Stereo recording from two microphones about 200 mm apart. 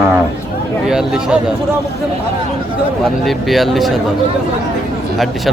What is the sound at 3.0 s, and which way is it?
Speech, centre (ahead or behind).